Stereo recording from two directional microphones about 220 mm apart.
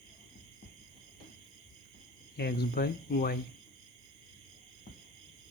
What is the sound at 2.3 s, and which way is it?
Speech, 45° left (ahead or behind).